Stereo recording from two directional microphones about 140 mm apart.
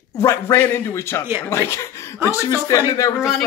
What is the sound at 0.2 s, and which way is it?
A man's voice, 20° left (ahead or behind).